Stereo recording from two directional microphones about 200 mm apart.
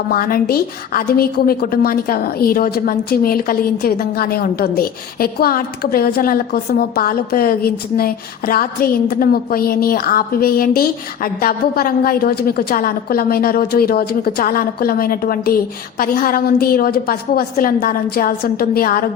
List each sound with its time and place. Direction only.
0.1 s a woman's voice: 50° left (ahead or behind)